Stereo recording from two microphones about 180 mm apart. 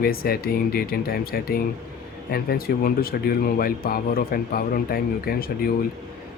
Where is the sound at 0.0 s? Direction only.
55° left (ahead or behind).